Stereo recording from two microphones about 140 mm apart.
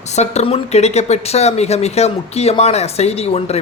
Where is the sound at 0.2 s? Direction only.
50° left (ahead or behind).